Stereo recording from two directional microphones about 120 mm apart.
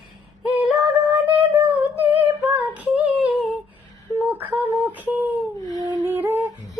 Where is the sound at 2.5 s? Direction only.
15° right (ahead or behind).